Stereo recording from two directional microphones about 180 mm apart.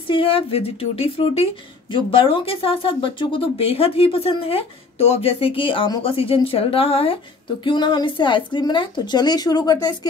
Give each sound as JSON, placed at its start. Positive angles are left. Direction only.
{"t": 0.1, "sound": "a woman's voice", "side_deg": 30}